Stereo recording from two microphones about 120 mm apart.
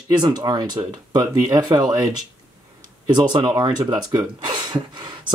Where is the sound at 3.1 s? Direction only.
40° right (ahead or behind).